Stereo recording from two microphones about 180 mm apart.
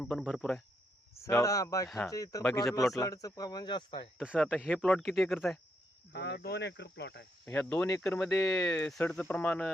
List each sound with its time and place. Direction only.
0.0 s speech: centre (ahead or behind)
1.1 s speech: 15° left (ahead or behind)
4.2 s speech: 5° right (ahead or behind)
4.6 s speech: 10° left (ahead or behind)
6.1 s cricket: 70° left (ahead or behind)
7.4 s speech: 10° left (ahead or behind)